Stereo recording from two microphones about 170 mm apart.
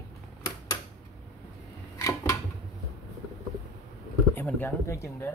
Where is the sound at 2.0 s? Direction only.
15° left (ahead or behind).